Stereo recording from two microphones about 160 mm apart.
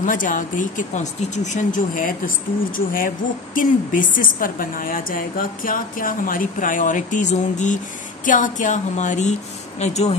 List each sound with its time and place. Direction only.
0.0 s a woman's voice: 55° left (ahead or behind)